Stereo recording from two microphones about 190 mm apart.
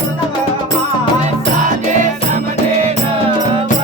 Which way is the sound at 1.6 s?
40° right (ahead or behind).